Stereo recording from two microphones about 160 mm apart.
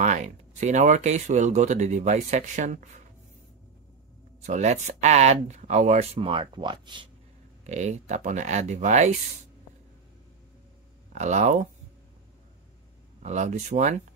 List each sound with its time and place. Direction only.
0.0 s speech: 50° right (ahead or behind)
4.4 s speech: 50° right (ahead or behind); by 7.1 s 30° right (ahead or behind)
7.6 s speech: 45° right (ahead or behind)
11.1 s speech: 50° right (ahead or behind)
13.2 s speech: 45° right (ahead or behind)